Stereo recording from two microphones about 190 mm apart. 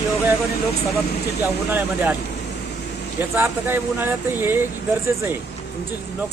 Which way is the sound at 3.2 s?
10° right (ahead or behind).